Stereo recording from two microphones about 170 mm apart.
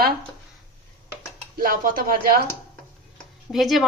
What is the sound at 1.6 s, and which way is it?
Speech, 55° right (ahead or behind).